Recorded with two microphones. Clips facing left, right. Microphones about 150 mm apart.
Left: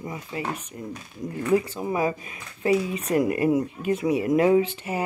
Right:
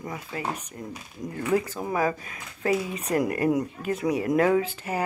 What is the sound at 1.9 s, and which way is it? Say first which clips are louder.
Speech: left 1 dB; 20° left (ahead or behind).